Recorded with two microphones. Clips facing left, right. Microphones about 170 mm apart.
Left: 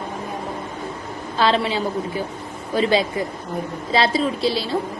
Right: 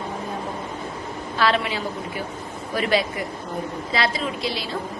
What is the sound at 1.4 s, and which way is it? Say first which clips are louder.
A woman's voice: left 3 dB; 30° left (ahead or behind).